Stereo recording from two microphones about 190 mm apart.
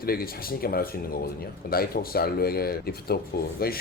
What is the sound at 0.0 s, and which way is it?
Speech, 50° left (ahead or behind).